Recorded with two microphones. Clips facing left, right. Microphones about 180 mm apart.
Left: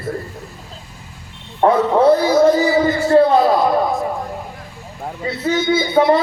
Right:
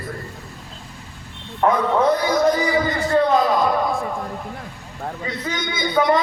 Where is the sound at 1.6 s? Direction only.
30° left (ahead or behind).